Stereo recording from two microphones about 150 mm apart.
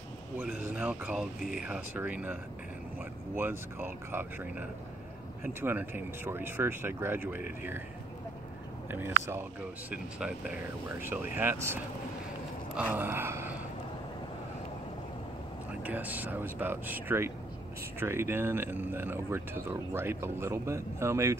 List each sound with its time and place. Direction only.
0.4 s speech: 10° right (ahead or behind)
3.3 s speech: 15° right (ahead or behind)
8.9 s speech: 15° right (ahead or behind)
12.7 s gasp: 10° right (ahead or behind)
15.8 s speech: 10° right (ahead or behind)